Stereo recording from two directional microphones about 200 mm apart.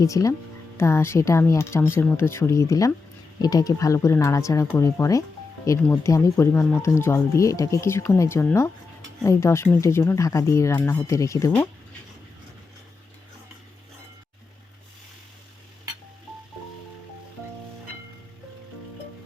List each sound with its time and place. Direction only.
0.0 s speech: 15° left (ahead or behind)